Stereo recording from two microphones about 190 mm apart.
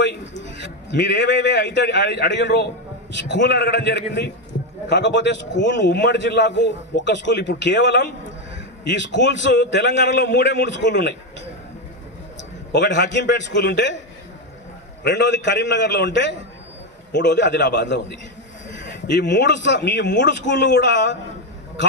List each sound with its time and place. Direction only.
0.4 s a man's voice: 70° left (ahead or behind)
12.7 s a man's voice: 65° left (ahead or behind)
15.0 s a man's voice: 65° left (ahead or behind)
19.1 s a man's voice: 65° left (ahead or behind)